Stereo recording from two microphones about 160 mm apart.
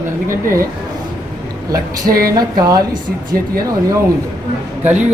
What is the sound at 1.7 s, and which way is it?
Speech, 20° right (ahead or behind).